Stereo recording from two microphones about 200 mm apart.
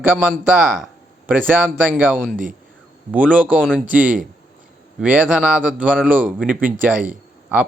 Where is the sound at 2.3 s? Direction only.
40° right (ahead or behind).